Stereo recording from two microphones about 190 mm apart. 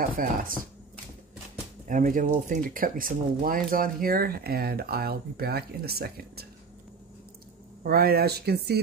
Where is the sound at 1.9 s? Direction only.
45° right (ahead or behind).